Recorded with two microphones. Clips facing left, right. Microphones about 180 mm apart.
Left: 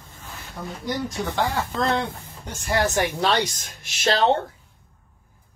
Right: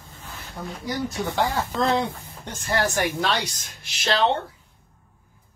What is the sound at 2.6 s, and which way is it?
Speech, 15° left (ahead or behind).